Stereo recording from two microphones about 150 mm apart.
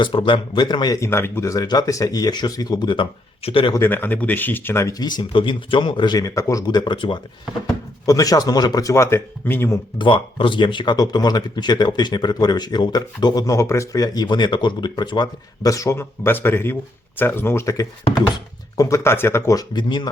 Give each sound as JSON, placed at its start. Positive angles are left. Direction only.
{"t": 0.0, "sound": "speech", "side_deg": 35}
{"t": 3.8, "sound": "speech", "side_deg": 15}
{"t": 10.0, "sound": "speech", "side_deg": 35}